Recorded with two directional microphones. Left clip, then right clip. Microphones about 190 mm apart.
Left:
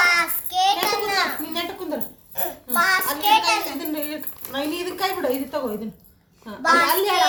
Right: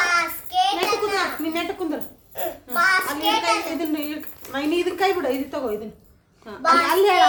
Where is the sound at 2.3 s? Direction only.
15° right (ahead or behind).